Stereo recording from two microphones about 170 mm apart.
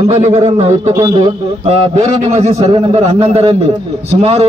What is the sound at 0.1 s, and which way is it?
Speech, 35° right (ahead or behind).